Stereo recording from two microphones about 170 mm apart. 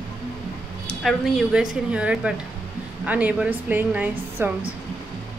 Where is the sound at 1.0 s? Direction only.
Centre (ahead or behind).